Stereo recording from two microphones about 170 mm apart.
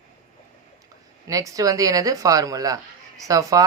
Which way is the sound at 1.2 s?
20° right (ahead or behind).